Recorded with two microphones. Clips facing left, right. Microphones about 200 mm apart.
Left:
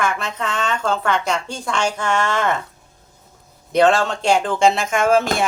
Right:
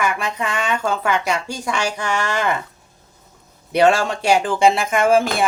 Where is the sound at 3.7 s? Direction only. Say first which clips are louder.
Even; 10° right (ahead or behind).